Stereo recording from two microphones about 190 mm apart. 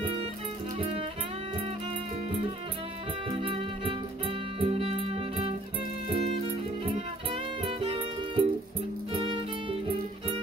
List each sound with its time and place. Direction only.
0.7 s music: 30° right (ahead or behind)
3.3 s music: 30° right (ahead or behind)